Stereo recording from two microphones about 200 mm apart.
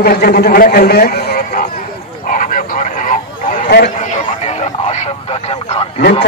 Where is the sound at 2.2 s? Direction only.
40° left (ahead or behind).